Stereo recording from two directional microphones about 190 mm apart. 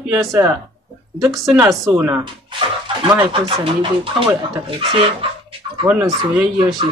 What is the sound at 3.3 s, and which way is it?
Speech, 25° right (ahead or behind).